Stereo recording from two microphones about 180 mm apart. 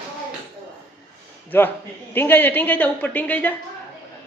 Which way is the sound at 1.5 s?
10° left (ahead or behind).